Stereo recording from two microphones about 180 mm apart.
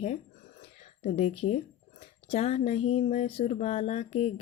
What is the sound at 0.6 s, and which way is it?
Speech, 35° left (ahead or behind).